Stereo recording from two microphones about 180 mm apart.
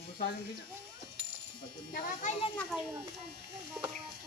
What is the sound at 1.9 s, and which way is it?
Electric shaver, 50° left (ahead or behind).